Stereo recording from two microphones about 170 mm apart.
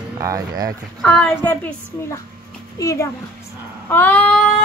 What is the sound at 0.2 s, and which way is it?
Speech, 20° right (ahead or behind).